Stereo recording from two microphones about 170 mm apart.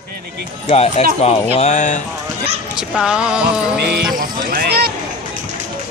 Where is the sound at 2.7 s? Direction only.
5° right (ahead or behind).